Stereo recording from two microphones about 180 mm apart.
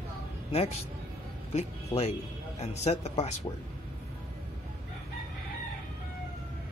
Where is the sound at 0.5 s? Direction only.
35° left (ahead or behind).